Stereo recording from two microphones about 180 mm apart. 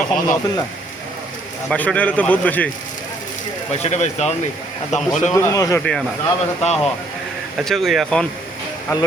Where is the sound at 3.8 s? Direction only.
40° left (ahead or behind).